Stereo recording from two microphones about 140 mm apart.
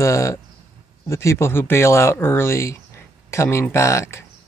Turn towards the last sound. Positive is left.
turn(degrees=20)  # may be behind; listen again after turning